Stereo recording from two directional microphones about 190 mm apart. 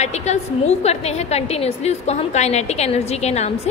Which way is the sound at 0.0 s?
35° left (ahead or behind).